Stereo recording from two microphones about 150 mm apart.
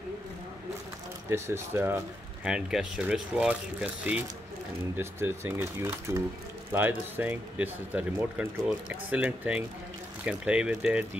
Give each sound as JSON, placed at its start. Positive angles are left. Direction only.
{"t": 1.3, "sound": "speech", "side_deg": -15}
{"t": 2.4, "sound": "speech", "side_deg": -5}